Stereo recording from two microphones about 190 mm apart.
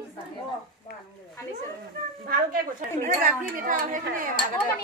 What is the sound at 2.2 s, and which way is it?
Speech, 50° right (ahead or behind).